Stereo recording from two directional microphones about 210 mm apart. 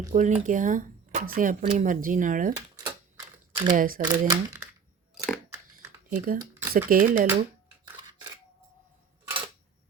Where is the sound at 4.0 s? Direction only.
35° right (ahead or behind).